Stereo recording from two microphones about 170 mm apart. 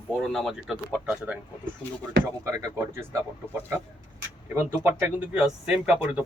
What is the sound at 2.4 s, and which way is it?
Speech, 15° right (ahead or behind).